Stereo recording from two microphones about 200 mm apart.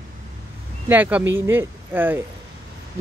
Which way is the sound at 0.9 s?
10° right (ahead or behind).